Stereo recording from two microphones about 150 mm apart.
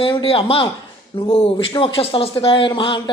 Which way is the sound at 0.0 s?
35° left (ahead or behind).